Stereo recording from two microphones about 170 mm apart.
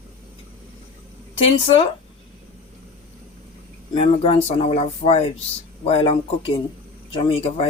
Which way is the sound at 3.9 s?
30° left (ahead or behind).